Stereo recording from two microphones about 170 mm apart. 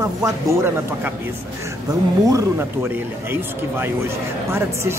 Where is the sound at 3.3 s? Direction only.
10° right (ahead or behind).